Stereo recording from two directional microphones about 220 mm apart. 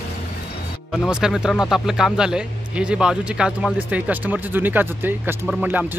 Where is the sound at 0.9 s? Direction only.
Centre (ahead or behind).